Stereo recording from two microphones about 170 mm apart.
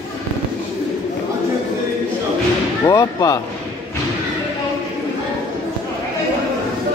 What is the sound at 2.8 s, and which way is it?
Speech, 20° left (ahead or behind).